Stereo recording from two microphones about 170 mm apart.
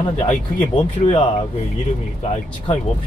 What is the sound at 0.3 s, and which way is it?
Speech, 30° left (ahead or behind).